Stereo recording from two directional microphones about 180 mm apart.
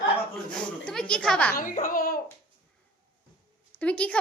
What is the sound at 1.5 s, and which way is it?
Speech, 50° left (ahead or behind).